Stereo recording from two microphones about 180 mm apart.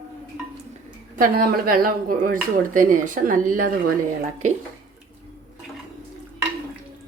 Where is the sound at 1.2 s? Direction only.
55° right (ahead or behind).